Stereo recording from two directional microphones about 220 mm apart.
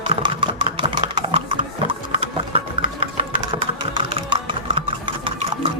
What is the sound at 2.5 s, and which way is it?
Engine, 25° right (ahead or behind).